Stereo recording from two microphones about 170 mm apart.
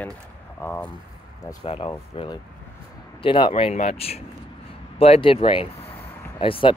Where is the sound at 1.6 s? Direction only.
35° left (ahead or behind).